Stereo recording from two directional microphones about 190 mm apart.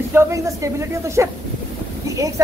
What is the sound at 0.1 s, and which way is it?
A man's voice, 15° right (ahead or behind).